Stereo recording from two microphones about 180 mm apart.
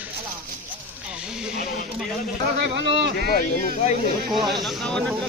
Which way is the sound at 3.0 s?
65° right (ahead or behind).